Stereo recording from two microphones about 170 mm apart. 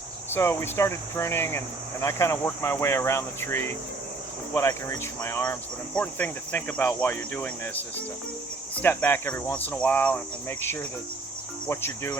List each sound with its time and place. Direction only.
0.3 s speech: 15° left (ahead or behind)